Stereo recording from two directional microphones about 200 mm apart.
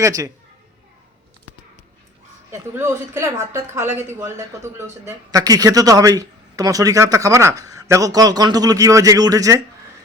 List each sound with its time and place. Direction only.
0.0 s speech: 15° right (ahead or behind)
2.5 s speech: 15° right (ahead or behind)